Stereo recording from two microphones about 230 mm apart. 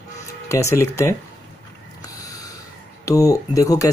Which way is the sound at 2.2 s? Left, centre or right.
Centre.